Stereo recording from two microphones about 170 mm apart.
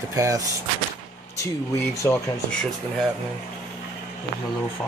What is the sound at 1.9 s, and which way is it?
Speech, 20° left (ahead or behind).